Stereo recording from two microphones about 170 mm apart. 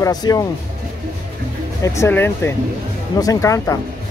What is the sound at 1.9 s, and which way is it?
Speech, 15° left (ahead or behind).